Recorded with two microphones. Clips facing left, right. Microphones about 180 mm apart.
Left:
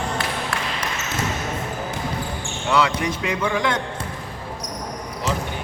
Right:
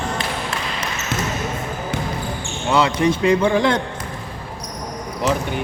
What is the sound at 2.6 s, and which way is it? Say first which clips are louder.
A man's voice: right 4 dB; 25° right (ahead or behind).